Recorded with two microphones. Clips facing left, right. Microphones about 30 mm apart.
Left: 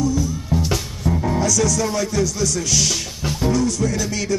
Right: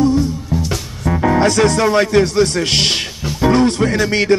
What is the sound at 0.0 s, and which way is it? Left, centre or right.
Music, right.